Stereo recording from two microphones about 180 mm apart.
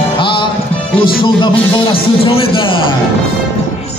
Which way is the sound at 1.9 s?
30° left (ahead or behind).